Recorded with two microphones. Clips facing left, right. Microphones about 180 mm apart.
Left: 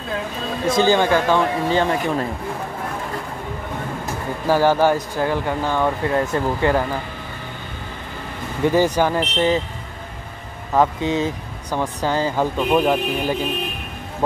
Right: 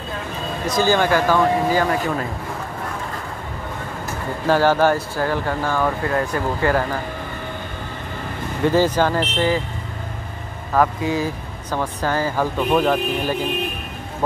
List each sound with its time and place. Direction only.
0.7 s speech: 20° left (ahead or behind)
4.5 s speech: 15° left (ahead or behind)
8.6 s speech: 15° left (ahead or behind)
10.7 s speech: 20° left (ahead or behind)